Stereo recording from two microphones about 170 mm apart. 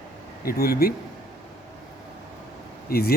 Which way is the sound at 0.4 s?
60° left (ahead or behind).